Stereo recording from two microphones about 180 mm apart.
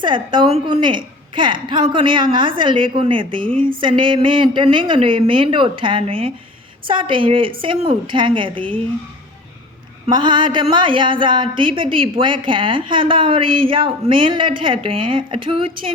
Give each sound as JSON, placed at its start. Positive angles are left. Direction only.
{"t": 0.0, "sound": "a woman's voice", "side_deg": -25}
{"t": 10.1, "sound": "a woman's voice", "side_deg": -25}